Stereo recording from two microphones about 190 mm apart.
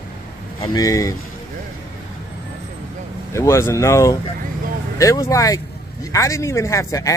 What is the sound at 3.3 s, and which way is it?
Speech, 15° left (ahead or behind).